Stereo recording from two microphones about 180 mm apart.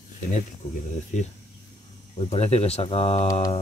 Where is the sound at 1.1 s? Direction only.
40° left (ahead or behind).